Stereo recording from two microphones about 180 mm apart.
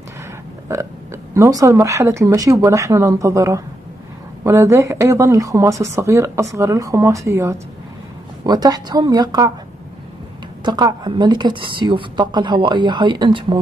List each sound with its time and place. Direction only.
1.3 s a woman's voice: 15° right (ahead or behind)
10.6 s a woman's voice: 25° right (ahead or behind)